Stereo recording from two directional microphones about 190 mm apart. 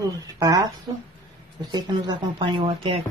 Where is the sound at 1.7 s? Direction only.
20° right (ahead or behind).